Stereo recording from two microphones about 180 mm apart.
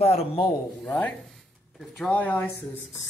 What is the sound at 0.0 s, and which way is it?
Speech, 35° left (ahead or behind).